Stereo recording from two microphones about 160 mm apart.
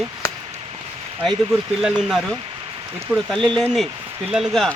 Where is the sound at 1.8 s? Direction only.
5° right (ahead or behind).